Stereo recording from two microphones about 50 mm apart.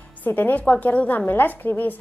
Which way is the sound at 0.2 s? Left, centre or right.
Left.